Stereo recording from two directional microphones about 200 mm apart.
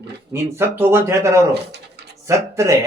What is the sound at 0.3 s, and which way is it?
A man's voice, 10° right (ahead or behind).